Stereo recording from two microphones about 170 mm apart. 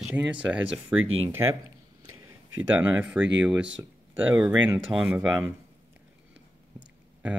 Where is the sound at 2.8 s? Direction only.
10° right (ahead or behind).